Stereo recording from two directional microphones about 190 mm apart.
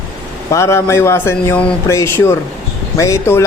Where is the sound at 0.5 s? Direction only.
15° left (ahead or behind).